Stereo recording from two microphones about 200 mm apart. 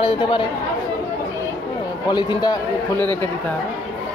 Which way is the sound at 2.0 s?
20° left (ahead or behind).